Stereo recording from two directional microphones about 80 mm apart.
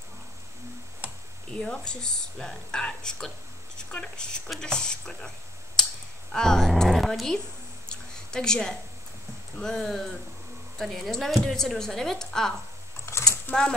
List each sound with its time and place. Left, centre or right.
1.5 s speech: centre
6.3 s a woman's voice: centre
7.9 s a sound: centre
9.6 s a woman's voice: centre
13.5 s speech: left